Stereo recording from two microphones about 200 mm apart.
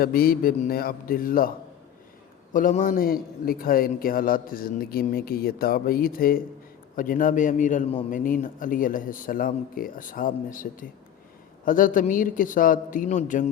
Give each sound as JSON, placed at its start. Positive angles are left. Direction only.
{"t": 0.0, "sound": "a man's voice", "side_deg": 45}